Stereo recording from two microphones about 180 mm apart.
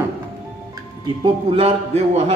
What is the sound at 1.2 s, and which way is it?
A man's voice, 35° right (ahead or behind).